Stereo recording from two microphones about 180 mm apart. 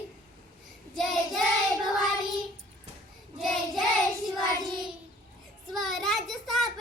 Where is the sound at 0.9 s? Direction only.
Centre (ahead or behind).